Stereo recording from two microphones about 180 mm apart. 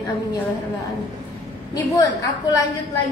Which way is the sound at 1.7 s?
20° left (ahead or behind).